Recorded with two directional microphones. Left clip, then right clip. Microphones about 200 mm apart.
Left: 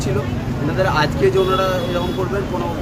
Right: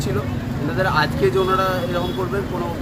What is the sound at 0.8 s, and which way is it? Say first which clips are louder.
Speech: left 2 dB; 5° right (ahead or behind).